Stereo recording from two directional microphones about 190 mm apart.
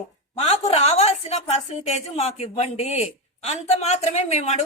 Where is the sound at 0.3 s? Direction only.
30° left (ahead or behind).